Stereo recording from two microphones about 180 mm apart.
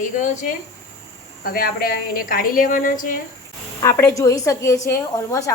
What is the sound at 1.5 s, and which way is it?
A woman's voice, 55° left (ahead or behind).